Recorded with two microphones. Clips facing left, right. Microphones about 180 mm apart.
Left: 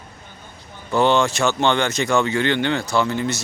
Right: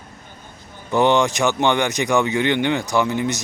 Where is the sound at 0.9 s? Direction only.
15° right (ahead or behind).